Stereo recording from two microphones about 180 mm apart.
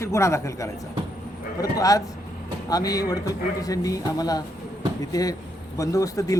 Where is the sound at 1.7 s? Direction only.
20° left (ahead or behind).